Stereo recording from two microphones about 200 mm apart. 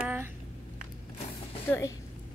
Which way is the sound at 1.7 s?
15° left (ahead or behind).